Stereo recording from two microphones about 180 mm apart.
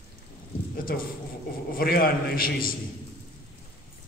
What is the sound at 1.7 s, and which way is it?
A man's voice, 55° left (ahead or behind).